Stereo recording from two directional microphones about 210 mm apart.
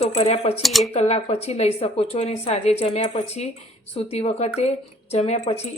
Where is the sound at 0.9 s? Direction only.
30° left (ahead or behind).